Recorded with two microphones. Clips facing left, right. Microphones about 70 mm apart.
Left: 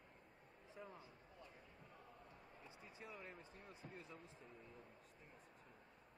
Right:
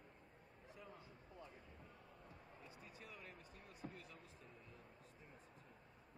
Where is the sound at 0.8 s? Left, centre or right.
Left.